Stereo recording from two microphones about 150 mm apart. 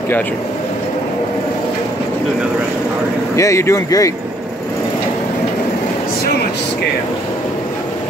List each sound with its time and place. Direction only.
3.3 s speech: 20° left (ahead or behind)